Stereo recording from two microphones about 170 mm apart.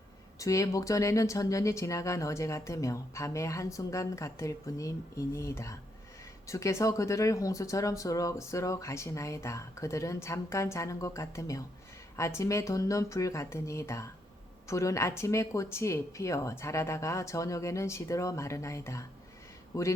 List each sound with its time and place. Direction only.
0.3 s speech: 20° left (ahead or behind)